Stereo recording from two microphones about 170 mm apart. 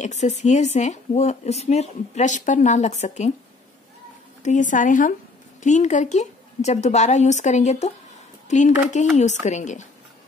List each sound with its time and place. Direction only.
0.0 s speech: 45° left (ahead or behind)
4.4 s speech: 45° left (ahead or behind)